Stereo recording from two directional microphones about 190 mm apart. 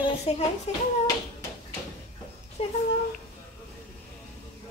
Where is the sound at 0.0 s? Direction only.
25° left (ahead or behind).